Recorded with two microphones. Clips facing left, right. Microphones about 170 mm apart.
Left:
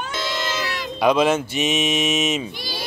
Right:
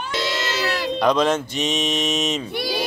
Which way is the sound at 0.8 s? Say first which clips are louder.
Left 2 dB; 5° left (ahead or behind).